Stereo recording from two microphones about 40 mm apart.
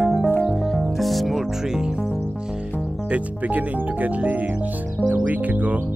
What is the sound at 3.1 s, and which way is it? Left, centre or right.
Speech, right.